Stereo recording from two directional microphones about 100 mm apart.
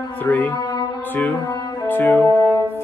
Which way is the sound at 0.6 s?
45° left (ahead or behind).